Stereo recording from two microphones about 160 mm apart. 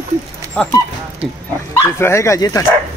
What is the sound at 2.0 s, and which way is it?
Speech, 15° left (ahead or behind).